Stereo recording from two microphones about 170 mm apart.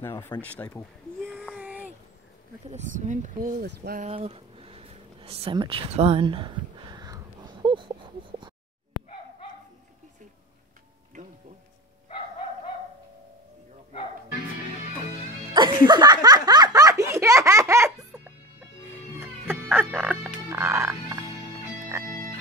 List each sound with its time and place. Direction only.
0.0 s speech: 15° left (ahead or behind)
1.3 s a sound: 5° left (ahead or behind)
1.6 s a sound: 10° right (ahead or behind)
2.7 s speech: 45° right (ahead or behind)
3.6 s speech: 65° right (ahead or behind)
4.0 s a sound: 35° right (ahead or behind)
15.5 s giggle: 25° right (ahead or behind)
19.1 s fowl: 15° right (ahead or behind)
20.4 s music: 15° right (ahead or behind)